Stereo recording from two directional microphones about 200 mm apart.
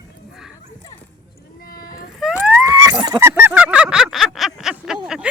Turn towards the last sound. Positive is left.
turn(degrees=-5)  # may be behind; listen again after turning